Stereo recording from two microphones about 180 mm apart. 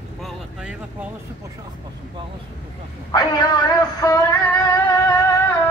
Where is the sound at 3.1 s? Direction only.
25° left (ahead or behind).